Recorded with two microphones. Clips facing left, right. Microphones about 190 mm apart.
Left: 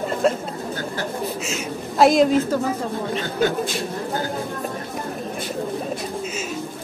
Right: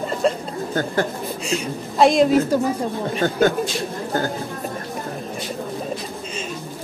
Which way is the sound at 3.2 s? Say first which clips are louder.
Right 5 dB; 50° right (ahead or behind).